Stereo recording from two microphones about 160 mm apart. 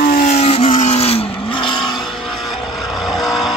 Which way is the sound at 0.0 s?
60° left (ahead or behind).